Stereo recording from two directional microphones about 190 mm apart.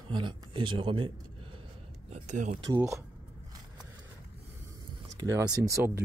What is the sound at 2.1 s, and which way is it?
Speech, 40° right (ahead or behind).